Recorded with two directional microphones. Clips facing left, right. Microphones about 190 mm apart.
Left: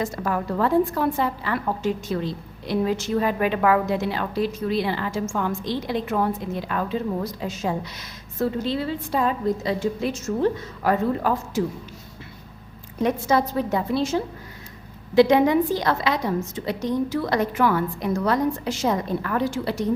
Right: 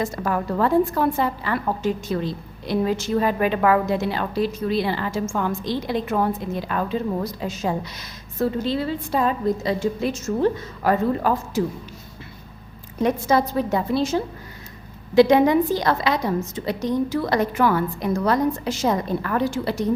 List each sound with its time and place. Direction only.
0.0 s a woman's voice: 40° right (ahead or behind)
13.0 s a woman's voice: 40° right (ahead or behind)